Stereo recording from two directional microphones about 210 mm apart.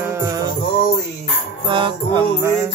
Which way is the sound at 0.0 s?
15° right (ahead or behind).